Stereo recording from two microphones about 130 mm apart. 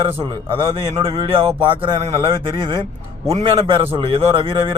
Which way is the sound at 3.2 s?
50° right (ahead or behind).